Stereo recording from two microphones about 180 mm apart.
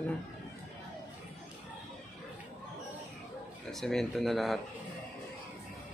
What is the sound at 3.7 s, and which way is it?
Speech, centre (ahead or behind).